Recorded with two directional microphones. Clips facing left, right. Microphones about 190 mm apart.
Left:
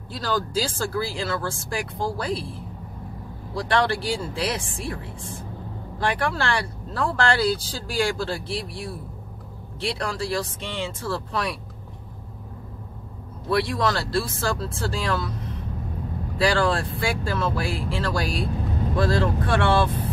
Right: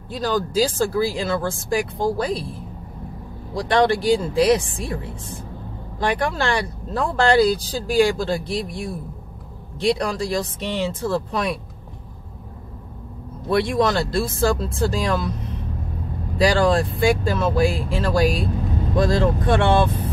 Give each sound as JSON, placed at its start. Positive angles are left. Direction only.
{"t": 0.2, "sound": "speech", "side_deg": -15}
{"t": 3.5, "sound": "speech", "side_deg": -20}
{"t": 5.9, "sound": "speech", "side_deg": -20}
{"t": 13.5, "sound": "speech", "side_deg": -20}
{"t": 16.3, "sound": "speech", "side_deg": -20}